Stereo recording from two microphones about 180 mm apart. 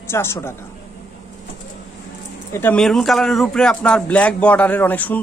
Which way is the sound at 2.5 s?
10° left (ahead or behind).